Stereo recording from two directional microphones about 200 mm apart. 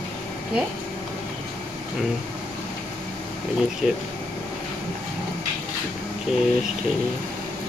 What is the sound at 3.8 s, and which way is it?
Speech, 5° right (ahead or behind).